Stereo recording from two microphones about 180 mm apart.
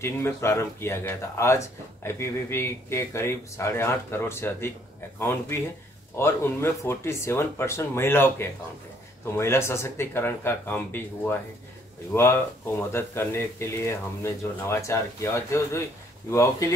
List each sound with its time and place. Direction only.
0.0 s speech: 15° left (ahead or behind)
6.1 s speech: 15° left (ahead or behind)